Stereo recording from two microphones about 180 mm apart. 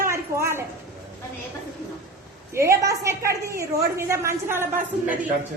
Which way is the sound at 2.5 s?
15° right (ahead or behind).